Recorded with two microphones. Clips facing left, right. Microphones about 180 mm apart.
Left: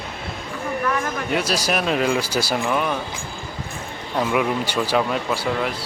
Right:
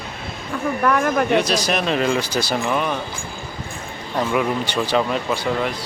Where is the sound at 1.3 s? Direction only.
10° left (ahead or behind).